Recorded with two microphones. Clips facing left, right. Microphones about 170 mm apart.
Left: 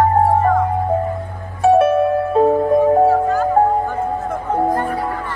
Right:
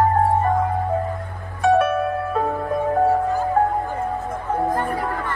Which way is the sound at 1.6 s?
30° left (ahead or behind).